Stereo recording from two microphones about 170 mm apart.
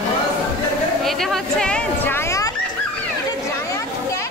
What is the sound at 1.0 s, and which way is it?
Speech, centre (ahead or behind).